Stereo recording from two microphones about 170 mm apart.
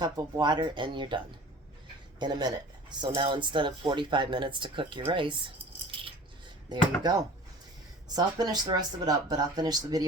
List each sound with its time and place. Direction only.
0.0 s speech: 25° right (ahead or behind)
5.9 s a sound: 30° right (ahead or behind)
6.7 s speech: 25° right (ahead or behind)